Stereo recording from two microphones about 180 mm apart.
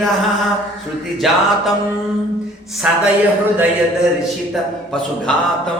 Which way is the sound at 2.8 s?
5° right (ahead or behind).